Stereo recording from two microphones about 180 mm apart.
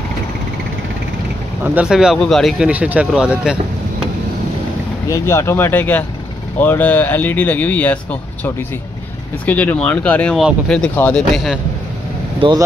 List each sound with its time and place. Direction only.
1.6 s speech: 5° right (ahead or behind)
5.0 s speech: 15° left (ahead or behind)
9.5 s speech: 10° left (ahead or behind)
12.4 s speech: 25° right (ahead or behind)